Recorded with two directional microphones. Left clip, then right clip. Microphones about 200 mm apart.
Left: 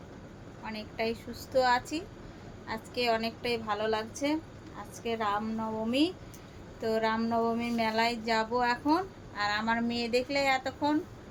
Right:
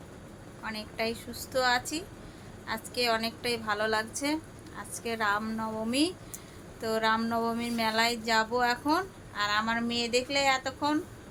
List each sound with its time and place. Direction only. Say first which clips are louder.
0.6 s speech: right 1 dB; 5° left (ahead or behind)